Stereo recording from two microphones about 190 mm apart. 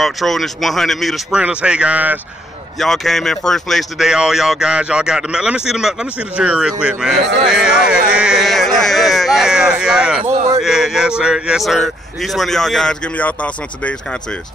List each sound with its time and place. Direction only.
0.0 s speech: centre (ahead or behind)